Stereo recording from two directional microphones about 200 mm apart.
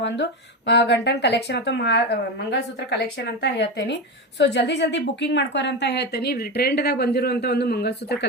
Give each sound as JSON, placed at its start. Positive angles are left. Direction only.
{"t": 0.0, "sound": "speech", "side_deg": 60}